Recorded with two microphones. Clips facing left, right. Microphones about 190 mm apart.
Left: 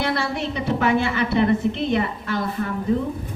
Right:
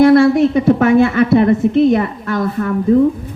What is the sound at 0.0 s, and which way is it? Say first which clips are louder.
A woman's voice: right 16 dB; 50° right (ahead or behind).